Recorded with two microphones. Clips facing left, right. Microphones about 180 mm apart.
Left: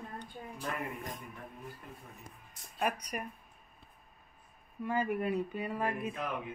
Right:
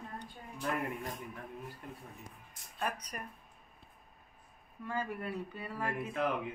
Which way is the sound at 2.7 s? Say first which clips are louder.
Left 4 dB; 10° left (ahead or behind).